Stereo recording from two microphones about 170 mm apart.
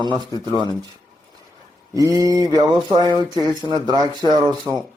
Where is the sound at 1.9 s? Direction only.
20° right (ahead or behind).